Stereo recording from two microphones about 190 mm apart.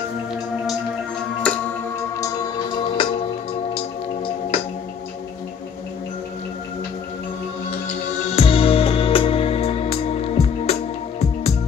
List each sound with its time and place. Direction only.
1.5 s music: 5° left (ahead or behind)
2.0 s music: 15° left (ahead or behind)
8.4 s music: 30° left (ahead or behind)